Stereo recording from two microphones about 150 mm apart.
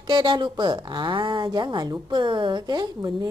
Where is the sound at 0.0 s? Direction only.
30° right (ahead or behind).